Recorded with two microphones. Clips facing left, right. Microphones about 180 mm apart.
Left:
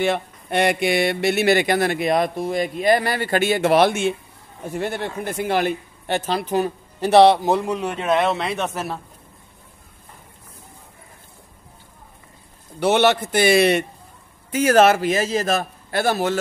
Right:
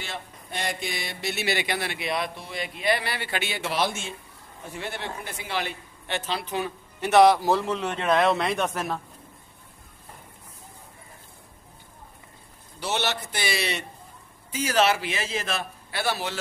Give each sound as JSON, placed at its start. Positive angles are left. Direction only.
{"t": 0.0, "sound": "speech", "side_deg": 65}
{"t": 4.7, "sound": "speech", "side_deg": 50}
{"t": 12.8, "sound": "speech", "side_deg": 55}